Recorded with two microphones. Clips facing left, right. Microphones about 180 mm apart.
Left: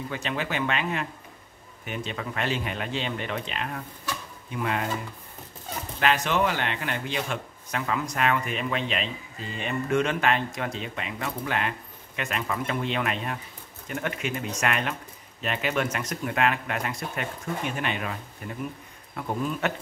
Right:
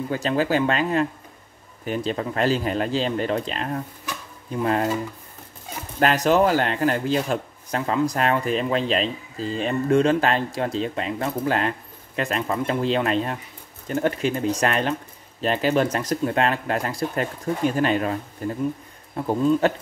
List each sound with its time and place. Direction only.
0.1 s a man's voice: 35° right (ahead or behind)
5.9 s a man's voice: 40° right (ahead or behind)